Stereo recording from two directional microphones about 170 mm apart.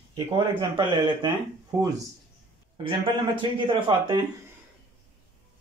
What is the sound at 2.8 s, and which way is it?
Speech, 30° right (ahead or behind).